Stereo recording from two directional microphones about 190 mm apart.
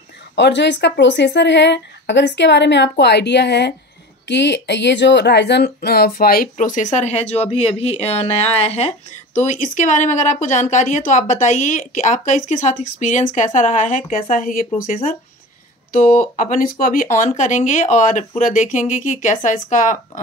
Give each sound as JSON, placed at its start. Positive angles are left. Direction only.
{"t": 0.4, "sound": "a woman's voice", "side_deg": 65}
{"t": 15.9, "sound": "speech", "side_deg": 45}